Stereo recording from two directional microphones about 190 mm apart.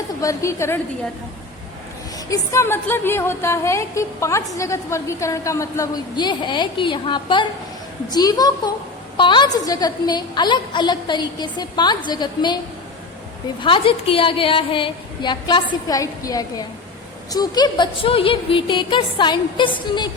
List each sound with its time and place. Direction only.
0.2 s a woman's voice: 15° left (ahead or behind)
2.3 s a woman's voice: 15° left (ahead or behind)
13.6 s a woman's voice: 25° left (ahead or behind)